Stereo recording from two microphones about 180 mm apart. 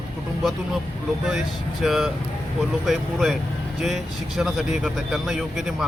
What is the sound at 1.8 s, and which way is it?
Speech, centre (ahead or behind).